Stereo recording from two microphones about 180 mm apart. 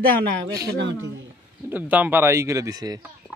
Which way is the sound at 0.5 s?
60° right (ahead or behind).